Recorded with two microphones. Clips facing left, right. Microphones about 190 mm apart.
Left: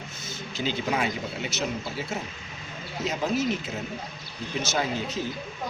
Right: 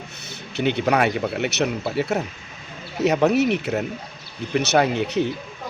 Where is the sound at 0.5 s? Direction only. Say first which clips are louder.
Right 8 dB; 65° right (ahead or behind).